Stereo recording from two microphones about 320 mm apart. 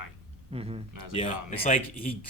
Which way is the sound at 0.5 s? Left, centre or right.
Centre.